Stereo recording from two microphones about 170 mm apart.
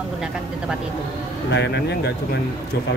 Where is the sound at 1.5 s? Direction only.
85° left.